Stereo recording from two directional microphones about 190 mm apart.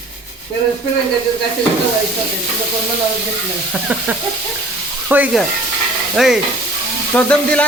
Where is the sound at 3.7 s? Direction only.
5° right (ahead or behind).